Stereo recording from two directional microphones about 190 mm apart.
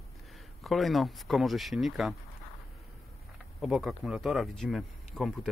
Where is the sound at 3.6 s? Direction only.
Centre (ahead or behind).